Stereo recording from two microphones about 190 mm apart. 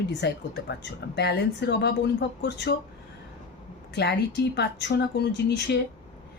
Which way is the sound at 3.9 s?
60° left (ahead or behind).